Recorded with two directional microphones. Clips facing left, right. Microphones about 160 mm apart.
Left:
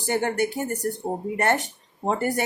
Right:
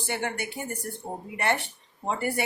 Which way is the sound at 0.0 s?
40° left (ahead or behind).